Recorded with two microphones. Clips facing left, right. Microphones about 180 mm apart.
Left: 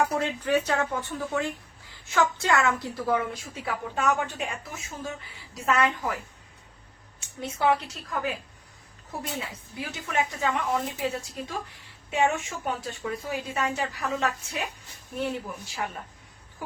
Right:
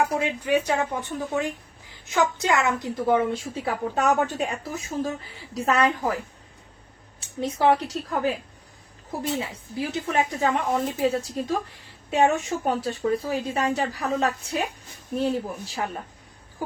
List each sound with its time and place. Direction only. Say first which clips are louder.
0.0 s a woman's voice: right 2 dB; 15° right (ahead or behind); by 6.1 s 35° right (ahead or behind)
7.2 s a woman's voice: right 4 dB; 35° right (ahead or behind)
9.9 s a woman's voice: right 3 dB; 35° right (ahead or behind)